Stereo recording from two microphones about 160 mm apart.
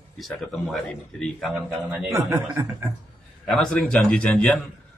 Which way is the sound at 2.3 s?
15° right (ahead or behind).